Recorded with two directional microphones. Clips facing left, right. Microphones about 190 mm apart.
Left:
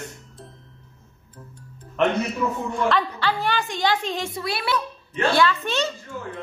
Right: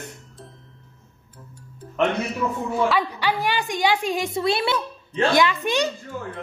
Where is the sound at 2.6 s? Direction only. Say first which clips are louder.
Right 3 dB; 5° right (ahead or behind).